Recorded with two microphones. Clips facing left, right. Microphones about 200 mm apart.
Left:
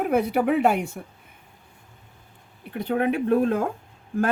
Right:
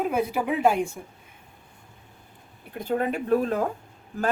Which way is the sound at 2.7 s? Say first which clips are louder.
Left 3 dB; 65° left (ahead or behind).